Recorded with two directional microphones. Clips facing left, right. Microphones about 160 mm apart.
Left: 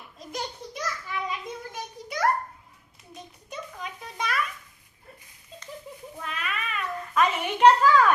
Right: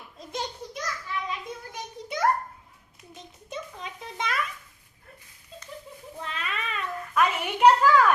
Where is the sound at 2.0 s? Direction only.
25° right (ahead or behind).